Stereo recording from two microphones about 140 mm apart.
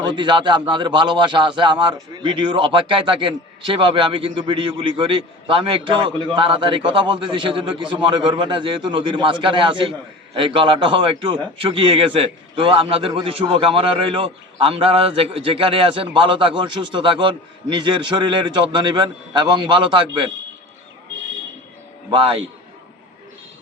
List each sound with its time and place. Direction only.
0.0 s a man's voice: 35° right (ahead or behind)
22.1 s a man's voice: 40° right (ahead or behind)